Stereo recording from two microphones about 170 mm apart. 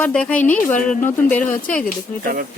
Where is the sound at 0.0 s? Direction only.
5° left (ahead or behind).